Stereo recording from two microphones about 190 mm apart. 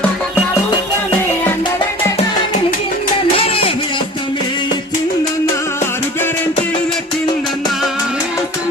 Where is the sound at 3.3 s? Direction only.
30° left (ahead or behind).